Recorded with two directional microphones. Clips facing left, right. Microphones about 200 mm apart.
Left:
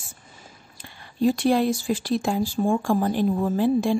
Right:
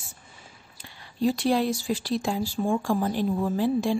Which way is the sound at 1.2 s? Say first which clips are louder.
Left 3 dB; 50° left (ahead or behind).